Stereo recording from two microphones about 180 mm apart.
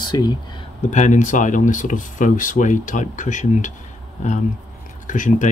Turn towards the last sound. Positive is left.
turn(degrees=45)  # may be behind; listen again after turning